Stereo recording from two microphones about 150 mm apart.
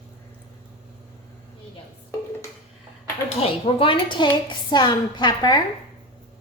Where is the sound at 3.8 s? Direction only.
35° left (ahead or behind).